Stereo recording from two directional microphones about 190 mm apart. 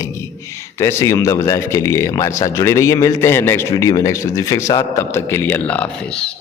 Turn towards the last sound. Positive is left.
turn(degrees=5)  # may be behind; listen again after turning